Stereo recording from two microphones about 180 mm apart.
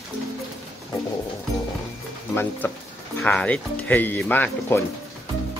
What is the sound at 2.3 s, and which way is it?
Speech, 10° left (ahead or behind).